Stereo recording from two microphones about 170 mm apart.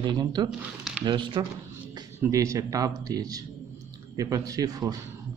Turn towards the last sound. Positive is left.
turn(degrees=-20)  # may be behind; listen again after turning